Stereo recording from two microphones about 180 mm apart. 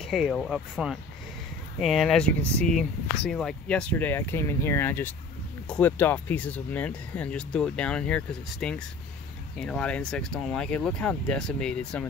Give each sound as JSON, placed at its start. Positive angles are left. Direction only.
{"t": 0.0, "sound": "speech", "side_deg": 0}